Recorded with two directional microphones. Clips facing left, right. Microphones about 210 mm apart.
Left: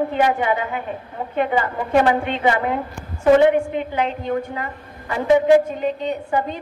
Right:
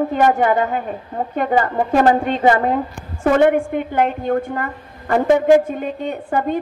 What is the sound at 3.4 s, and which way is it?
A woman's voice, 50° right (ahead or behind).